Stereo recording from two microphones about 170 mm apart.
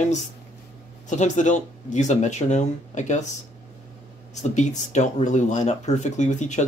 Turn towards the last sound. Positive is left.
turn(degrees=45)  # may be behind; listen again after turning